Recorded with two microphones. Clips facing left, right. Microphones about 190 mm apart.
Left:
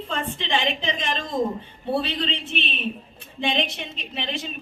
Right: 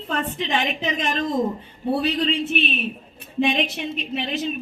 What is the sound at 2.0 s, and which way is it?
A woman's voice, 30° left (ahead or behind).